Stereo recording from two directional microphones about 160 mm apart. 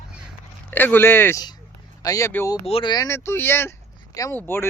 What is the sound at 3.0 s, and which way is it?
Speech, 15° left (ahead or behind).